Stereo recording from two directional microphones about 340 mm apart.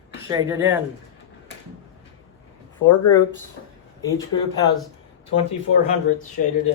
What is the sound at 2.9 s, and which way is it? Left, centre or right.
Speech, centre.